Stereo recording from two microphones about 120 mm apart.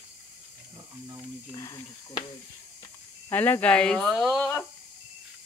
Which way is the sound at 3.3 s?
15° left (ahead or behind).